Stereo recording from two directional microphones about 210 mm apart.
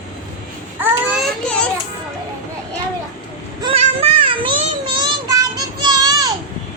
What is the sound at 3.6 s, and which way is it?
Child singing, 30° right (ahead or behind).